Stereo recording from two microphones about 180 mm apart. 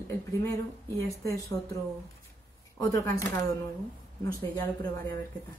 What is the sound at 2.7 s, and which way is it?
Speech, 15° left (ahead or behind).